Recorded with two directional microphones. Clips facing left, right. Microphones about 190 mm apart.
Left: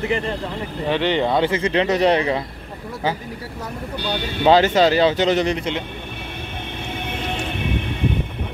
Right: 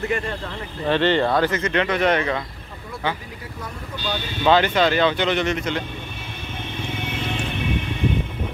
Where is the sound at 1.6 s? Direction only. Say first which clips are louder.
Left 3 dB; 35° left (ahead or behind).